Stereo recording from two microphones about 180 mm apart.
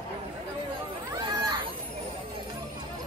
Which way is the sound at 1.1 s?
20° right (ahead or behind).